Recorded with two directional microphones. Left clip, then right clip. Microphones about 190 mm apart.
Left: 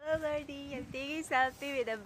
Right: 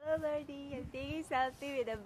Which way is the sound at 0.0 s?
10° left (ahead or behind).